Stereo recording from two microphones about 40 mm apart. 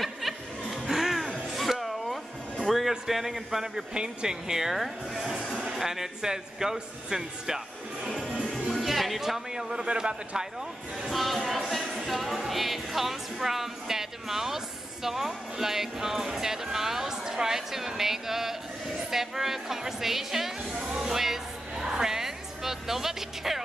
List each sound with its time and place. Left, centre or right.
0.0 s snicker: centre
1.6 s music: centre
2.9 s a man's voice: centre
3.9 s speech: right
8.8 s speech: centre
9.5 s speech: centre
11.1 s speech: centre
12.1 s music: centre
15.0 s speech: centre
20.9 s music: centre